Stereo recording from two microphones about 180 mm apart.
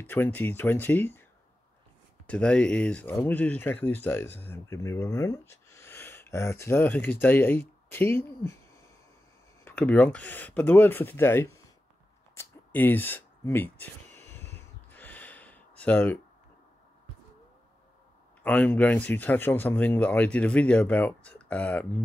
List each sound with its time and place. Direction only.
0.0 s speech: 10° left (ahead or behind)
2.2 s speech: 5° left (ahead or behind)
9.7 s speech: 10° left (ahead or behind)
12.4 s a sound: 10° left (ahead or behind)
14.5 s gasp: 10° left (ahead or behind)
15.8 s speech: 10° left (ahead or behind)
18.4 s speech: 10° left (ahead or behind)